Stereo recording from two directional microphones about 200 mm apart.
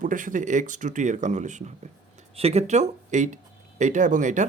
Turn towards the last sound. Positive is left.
turn(degrees=-40)  # may be behind; listen again after turning